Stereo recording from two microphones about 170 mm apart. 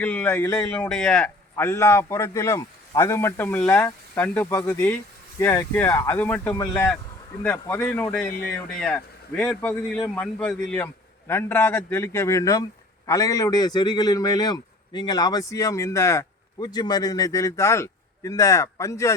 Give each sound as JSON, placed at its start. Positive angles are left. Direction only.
{"t": 0.0, "sound": "a man's voice", "side_deg": 10}
{"t": 11.3, "sound": "a man's voice", "side_deg": 15}